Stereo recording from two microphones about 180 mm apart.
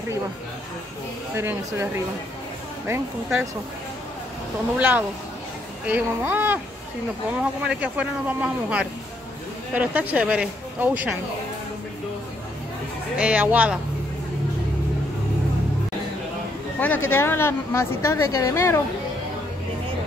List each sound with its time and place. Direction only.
1.3 s speech: 15° right (ahead or behind)
2.9 s speech: 5° right (ahead or behind)
4.7 s speech: 10° right (ahead or behind)
13.2 s speech: 10° right (ahead or behind)
16.8 s a woman's voice: 10° left (ahead or behind)